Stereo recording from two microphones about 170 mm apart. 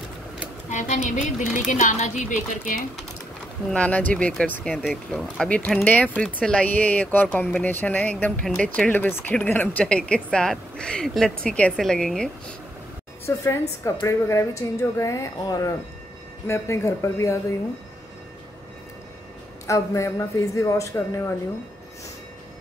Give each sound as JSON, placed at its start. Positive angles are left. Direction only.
{"t": 0.7, "sound": "speech", "side_deg": 45}
{"t": 3.7, "sound": "speech", "side_deg": 10}
{"t": 13.4, "sound": "a woman's voice", "side_deg": 20}
{"t": 19.6, "sound": "a woman's voice", "side_deg": 20}